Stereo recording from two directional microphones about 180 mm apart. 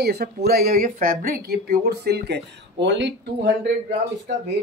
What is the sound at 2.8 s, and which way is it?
Speech, 80° right.